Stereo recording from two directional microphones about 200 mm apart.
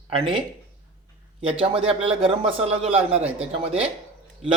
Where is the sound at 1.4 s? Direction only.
25° right (ahead or behind).